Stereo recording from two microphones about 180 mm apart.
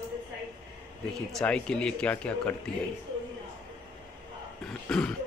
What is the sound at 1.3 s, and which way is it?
Speech, 5° left (ahead or behind).